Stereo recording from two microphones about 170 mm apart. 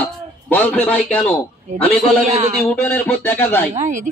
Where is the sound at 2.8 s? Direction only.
10° left (ahead or behind).